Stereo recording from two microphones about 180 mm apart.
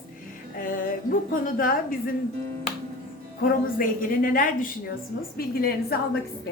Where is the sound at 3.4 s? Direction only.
50° left (ahead or behind).